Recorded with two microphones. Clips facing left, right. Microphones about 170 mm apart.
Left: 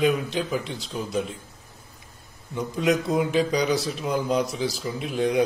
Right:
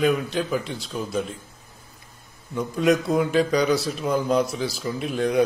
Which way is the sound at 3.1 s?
15° left (ahead or behind).